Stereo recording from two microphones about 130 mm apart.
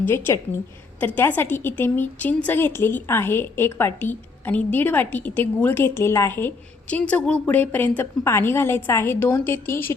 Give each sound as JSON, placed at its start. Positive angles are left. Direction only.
{"t": 0.0, "sound": "a woman's voice", "side_deg": 15}